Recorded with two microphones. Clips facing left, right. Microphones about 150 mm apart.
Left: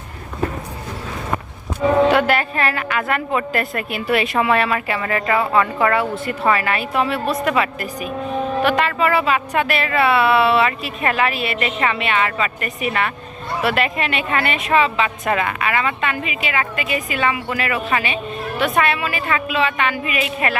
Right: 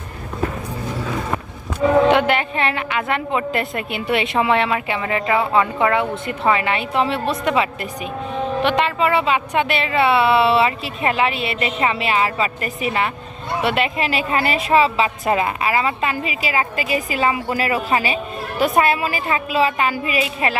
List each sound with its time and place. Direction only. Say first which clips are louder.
2.0 s a woman's voice: even; 20° right (ahead or behind)